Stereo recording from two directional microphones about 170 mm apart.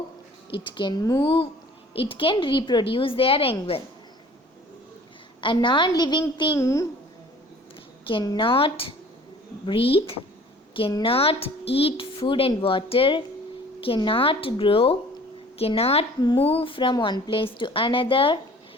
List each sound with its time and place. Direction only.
0.5 s a woman's voice: 30° left (ahead or behind)
5.4 s a woman's voice: 30° left (ahead or behind)
6.6 s a child's voice: 15° left (ahead or behind)
8.0 s speech: 25° left (ahead or behind)